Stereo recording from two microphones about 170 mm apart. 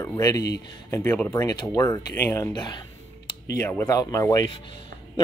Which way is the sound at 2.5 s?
25° left (ahead or behind).